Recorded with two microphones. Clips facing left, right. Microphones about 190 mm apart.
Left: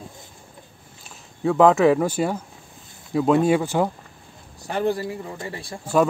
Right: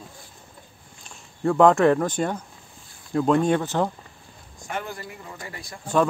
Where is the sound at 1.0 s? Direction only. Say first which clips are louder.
Left 1 dB; centre (ahead or behind).